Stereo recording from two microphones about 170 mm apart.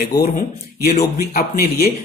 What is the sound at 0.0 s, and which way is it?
Speech, 65° left (ahead or behind).